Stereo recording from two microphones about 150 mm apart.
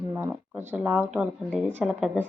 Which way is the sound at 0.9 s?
Centre (ahead or behind).